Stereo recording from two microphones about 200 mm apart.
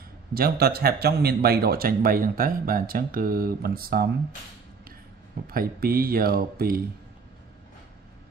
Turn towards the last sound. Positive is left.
turn(degrees=-50)  # may be behind; listen again after turning